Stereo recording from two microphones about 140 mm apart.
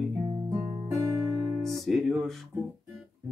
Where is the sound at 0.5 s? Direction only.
15° right (ahead or behind).